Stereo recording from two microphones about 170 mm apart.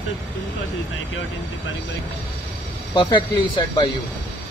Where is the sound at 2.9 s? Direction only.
30° left (ahead or behind).